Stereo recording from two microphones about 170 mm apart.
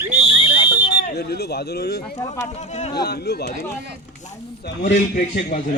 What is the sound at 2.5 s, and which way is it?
Speech, 40° left (ahead or behind).